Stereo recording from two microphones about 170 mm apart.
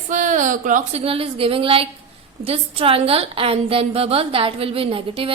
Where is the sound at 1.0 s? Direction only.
35° right (ahead or behind).